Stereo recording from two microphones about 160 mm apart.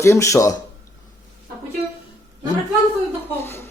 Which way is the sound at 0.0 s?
20° left (ahead or behind).